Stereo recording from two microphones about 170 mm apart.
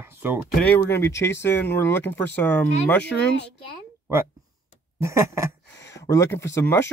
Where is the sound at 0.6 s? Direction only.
10° left (ahead or behind).